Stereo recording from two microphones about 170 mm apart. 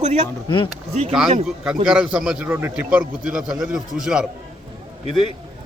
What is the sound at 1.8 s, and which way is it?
A man's voice, 5° right (ahead or behind).